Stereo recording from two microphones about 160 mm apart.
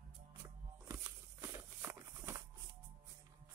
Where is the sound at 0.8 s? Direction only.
15° right (ahead or behind).